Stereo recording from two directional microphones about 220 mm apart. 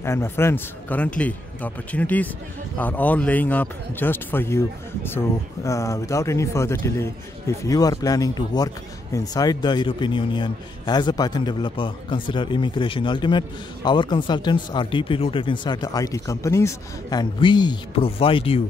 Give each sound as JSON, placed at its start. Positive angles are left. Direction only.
{"t": 0.0, "sound": "a man's voice", "side_deg": 10}